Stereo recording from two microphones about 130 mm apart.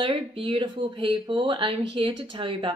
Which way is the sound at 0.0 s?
40° right (ahead or behind).